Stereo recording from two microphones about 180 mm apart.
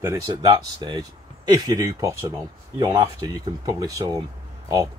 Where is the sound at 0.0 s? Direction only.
20° right (ahead or behind).